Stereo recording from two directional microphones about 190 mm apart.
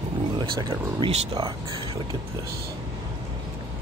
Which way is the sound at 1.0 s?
25° right (ahead or behind).